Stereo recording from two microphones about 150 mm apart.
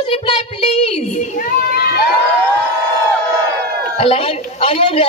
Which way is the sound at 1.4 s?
90° left.